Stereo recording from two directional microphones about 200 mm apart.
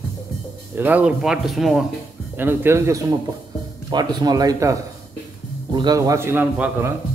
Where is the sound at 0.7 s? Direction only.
10° right (ahead or behind).